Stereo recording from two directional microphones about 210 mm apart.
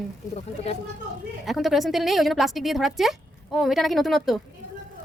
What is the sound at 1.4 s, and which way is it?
A woman's voice, centre (ahead or behind).